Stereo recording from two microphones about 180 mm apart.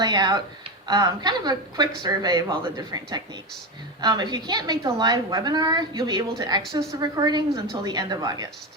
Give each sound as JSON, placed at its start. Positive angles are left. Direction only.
{"t": 0.0, "sound": "a woman's voice", "side_deg": -25}